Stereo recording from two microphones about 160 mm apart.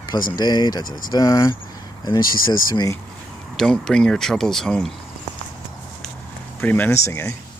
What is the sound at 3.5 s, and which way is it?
Speech, centre (ahead or behind).